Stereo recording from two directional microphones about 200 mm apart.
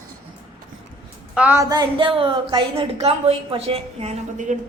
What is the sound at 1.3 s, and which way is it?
A woman's voice, 10° right (ahead or behind).